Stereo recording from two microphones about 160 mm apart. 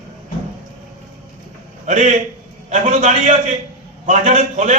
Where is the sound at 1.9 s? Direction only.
45° right (ahead or behind).